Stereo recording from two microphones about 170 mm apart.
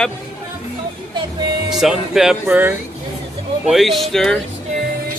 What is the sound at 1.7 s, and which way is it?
Speech, centre (ahead or behind).